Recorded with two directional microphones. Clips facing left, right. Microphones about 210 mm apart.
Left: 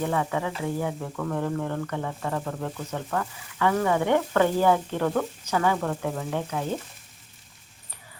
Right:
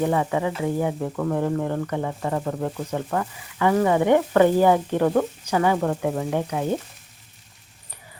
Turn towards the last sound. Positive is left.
turn(degrees=-15)  # may be behind; listen again after turning